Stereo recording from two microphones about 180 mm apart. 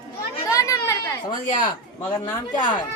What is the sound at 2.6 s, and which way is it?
Speech, 25° left (ahead or behind).